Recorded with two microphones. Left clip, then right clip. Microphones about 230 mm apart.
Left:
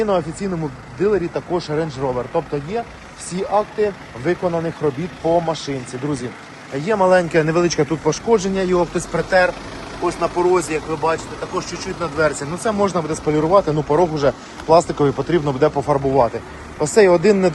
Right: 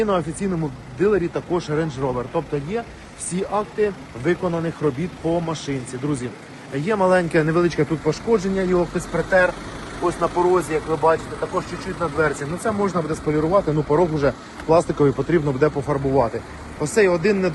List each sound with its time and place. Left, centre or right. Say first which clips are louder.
0.0 s speech: left 2 dB; centre